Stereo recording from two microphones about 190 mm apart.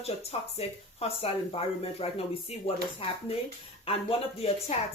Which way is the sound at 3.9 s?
30° left (ahead or behind).